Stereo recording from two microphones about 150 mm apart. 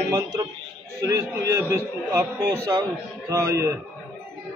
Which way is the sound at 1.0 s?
20° right (ahead or behind).